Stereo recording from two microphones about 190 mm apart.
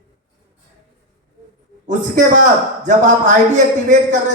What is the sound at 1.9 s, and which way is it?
A man's voice, 40° right (ahead or behind).